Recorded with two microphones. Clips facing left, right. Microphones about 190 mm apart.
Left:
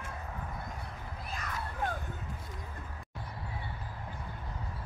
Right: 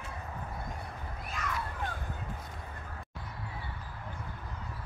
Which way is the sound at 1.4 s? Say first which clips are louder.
Right 9 dB; 35° left (ahead or behind).